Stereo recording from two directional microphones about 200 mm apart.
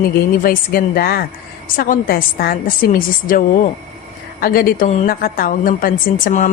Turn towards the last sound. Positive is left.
turn(degrees=40)  # may be behind; listen again after turning